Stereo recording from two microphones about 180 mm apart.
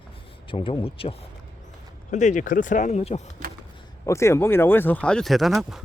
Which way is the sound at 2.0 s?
40° left (ahead or behind).